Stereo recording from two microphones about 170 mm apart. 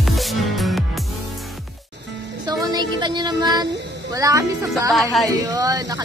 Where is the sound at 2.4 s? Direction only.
20° right (ahead or behind).